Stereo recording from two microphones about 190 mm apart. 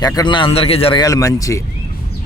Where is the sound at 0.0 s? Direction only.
25° left (ahead or behind).